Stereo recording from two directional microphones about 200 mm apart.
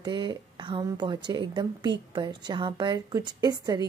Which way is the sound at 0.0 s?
20° right (ahead or behind).